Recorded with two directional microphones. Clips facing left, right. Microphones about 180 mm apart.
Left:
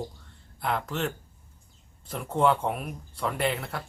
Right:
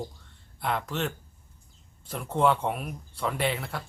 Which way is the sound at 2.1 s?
Centre (ahead or behind).